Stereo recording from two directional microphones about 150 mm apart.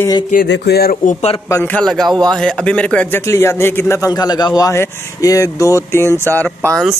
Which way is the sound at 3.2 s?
20° left (ahead or behind).